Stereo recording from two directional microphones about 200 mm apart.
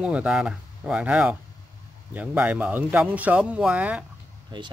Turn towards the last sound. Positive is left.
turn(degrees=-5)  # may be behind; listen again after turning